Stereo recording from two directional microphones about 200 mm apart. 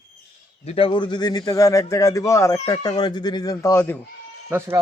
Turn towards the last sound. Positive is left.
turn(degrees=-10)  # may be behind; listen again after turning